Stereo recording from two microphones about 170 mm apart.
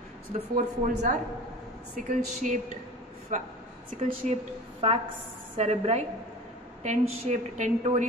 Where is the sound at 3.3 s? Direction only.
45° right (ahead or behind).